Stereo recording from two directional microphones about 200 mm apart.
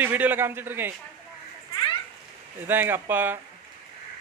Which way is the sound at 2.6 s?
10° right (ahead or behind).